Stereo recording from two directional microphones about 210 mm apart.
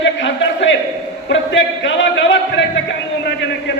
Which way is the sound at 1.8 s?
60° left (ahead or behind).